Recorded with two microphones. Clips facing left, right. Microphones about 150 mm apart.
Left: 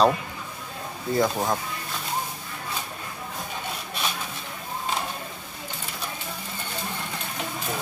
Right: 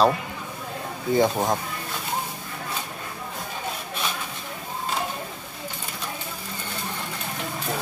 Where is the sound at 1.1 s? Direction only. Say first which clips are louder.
Right 3 dB; 20° right (ahead or behind).